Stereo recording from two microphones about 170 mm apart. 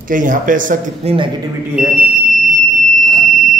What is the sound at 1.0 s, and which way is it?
Speech, 40° right (ahead or behind).